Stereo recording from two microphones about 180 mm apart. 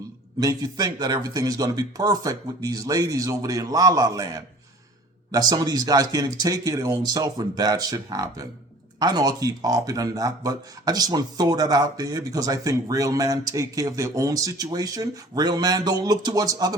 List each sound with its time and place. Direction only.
0.3 s speech: 20° right (ahead or behind)